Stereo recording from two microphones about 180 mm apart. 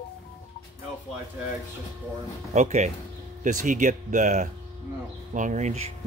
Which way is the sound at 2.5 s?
40° right (ahead or behind).